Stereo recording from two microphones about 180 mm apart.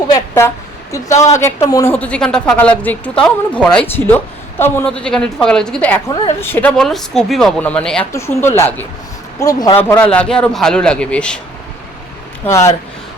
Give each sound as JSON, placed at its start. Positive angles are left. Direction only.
{"t": 0.1, "sound": "a woman's voice", "side_deg": 15}
{"t": 10.0, "sound": "speech", "side_deg": 5}
{"t": 12.5, "sound": "a woman's voice", "side_deg": 15}